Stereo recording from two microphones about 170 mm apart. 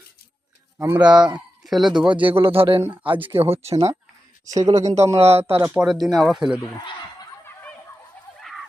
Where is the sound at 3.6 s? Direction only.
35° right (ahead or behind).